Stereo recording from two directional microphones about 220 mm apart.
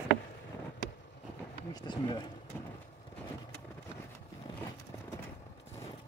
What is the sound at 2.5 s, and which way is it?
Vehicle, 10° left (ahead or behind).